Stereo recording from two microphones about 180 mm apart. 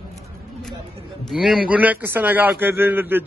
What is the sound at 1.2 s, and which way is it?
A man's voice, centre (ahead or behind).